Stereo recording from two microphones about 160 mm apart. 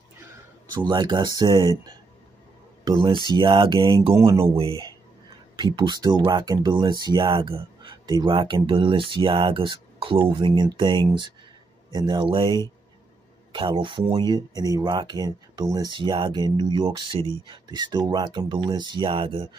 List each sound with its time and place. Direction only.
0.7 s speech: 25° right (ahead or behind)
4.1 s speech: 20° right (ahead or behind)
5.6 s speech: 25° right (ahead or behind)